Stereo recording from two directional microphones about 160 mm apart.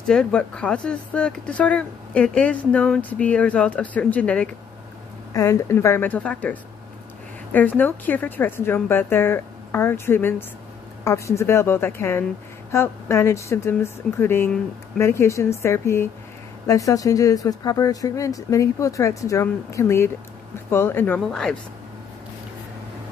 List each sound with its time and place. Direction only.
0.0 s speech: 5° left (ahead or behind)